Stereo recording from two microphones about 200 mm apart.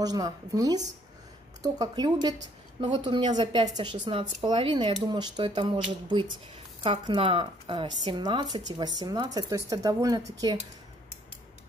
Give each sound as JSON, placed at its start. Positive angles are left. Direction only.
{"t": 0.0, "sound": "speech", "side_deg": -20}